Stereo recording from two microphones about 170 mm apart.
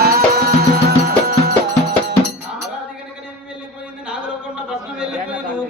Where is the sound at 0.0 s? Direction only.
65° right (ahead or behind).